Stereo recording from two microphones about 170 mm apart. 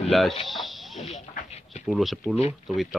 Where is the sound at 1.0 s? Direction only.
40° left (ahead or behind).